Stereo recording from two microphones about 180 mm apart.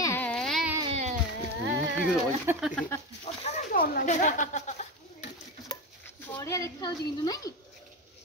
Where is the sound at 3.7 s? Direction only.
55° left (ahead or behind); by 5.3 s 40° left (ahead or behind).